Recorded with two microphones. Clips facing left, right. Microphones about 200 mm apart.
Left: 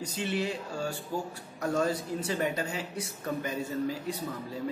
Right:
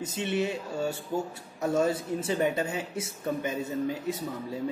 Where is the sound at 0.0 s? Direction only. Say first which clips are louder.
Right 3 dB; 25° right (ahead or behind).